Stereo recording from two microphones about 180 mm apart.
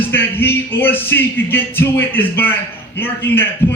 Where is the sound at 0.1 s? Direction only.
10° left (ahead or behind).